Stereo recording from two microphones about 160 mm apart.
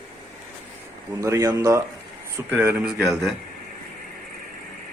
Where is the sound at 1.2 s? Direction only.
20° right (ahead or behind); by 3.3 s centre (ahead or behind).